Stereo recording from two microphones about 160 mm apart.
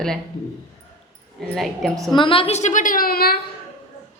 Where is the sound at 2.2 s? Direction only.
35° left (ahead or behind); by 3.3 s 70° left (ahead or behind).